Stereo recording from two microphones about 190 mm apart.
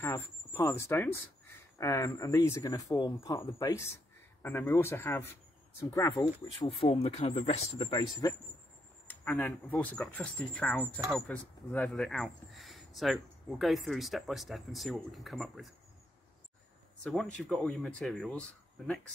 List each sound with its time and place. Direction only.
0.0 s speech: 15° left (ahead or behind)
6.8 s speech: 30° left (ahead or behind)
8.0 s speech: 20° left (ahead or behind)
9.0 s speech: 5° left (ahead or behind)
17.0 s speech: 5° left (ahead or behind)